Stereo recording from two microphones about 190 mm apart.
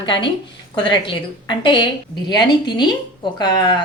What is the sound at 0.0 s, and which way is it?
A woman's voice, 25° left (ahead or behind).